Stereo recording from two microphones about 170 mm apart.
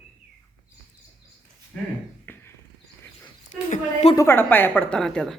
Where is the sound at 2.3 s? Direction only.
10° left (ahead or behind).